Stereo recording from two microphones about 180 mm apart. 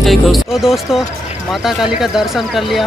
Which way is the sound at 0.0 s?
Centre (ahead or behind).